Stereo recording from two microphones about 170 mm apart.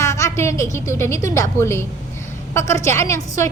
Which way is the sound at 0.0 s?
20° left (ahead or behind).